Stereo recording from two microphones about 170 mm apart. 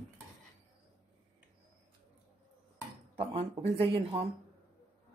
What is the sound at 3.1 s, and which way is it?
Speech, 30° right (ahead or behind).